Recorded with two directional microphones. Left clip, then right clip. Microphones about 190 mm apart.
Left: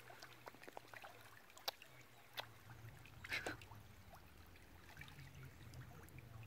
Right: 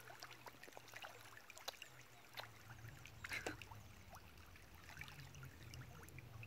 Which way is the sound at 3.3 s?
25° left (ahead or behind).